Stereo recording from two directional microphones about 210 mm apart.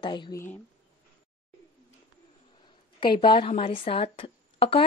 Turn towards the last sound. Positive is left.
turn(degrees=25)  # may be behind; listen again after turning